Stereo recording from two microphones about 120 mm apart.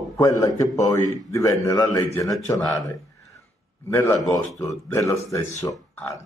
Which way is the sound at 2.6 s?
25° left (ahead or behind).